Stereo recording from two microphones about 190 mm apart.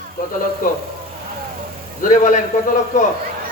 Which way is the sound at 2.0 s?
45° left (ahead or behind).